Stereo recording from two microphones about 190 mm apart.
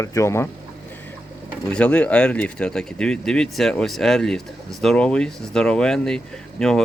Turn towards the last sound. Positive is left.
turn(degrees=5)  # may be behind; listen again after turning